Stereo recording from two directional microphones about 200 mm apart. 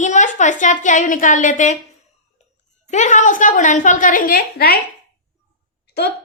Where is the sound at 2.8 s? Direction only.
35° left (ahead or behind).